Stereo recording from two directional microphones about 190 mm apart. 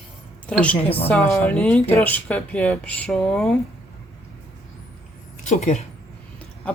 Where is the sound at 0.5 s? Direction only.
5° left (ahead or behind).